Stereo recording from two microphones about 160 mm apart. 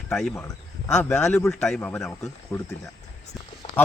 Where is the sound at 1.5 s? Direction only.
5° left (ahead or behind).